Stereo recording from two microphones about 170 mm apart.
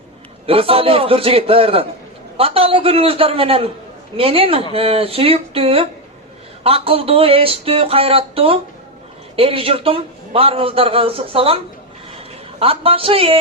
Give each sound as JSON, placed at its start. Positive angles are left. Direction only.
{"t": 0.4, "sound": "a man's voice", "side_deg": -35}